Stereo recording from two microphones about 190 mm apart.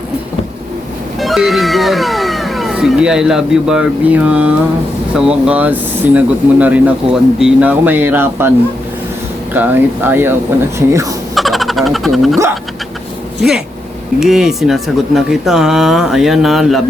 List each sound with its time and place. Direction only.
1.2 s speech: centre (ahead or behind)
11.3 s a sound: centre (ahead or behind)
14.2 s speech: centre (ahead or behind)